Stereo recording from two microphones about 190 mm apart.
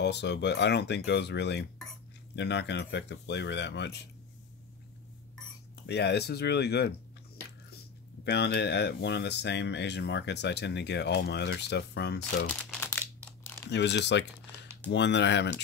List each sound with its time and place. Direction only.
0.0 s speech: 65° left (ahead or behind)
5.9 s speech: 60° left (ahead or behind)
8.2 s speech: 60° left (ahead or behind)
12.8 s crumpling: 10° left (ahead or behind)
13.7 s speech: 65° left (ahead or behind)